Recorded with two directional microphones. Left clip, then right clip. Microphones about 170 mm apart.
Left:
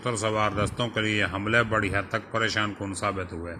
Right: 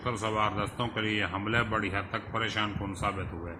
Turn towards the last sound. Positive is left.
turn(degrees=20)  # may be behind; listen again after turning